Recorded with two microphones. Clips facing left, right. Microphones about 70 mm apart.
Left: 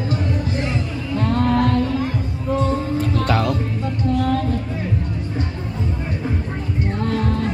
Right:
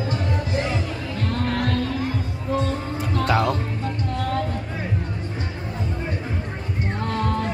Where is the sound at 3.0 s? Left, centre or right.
Centre.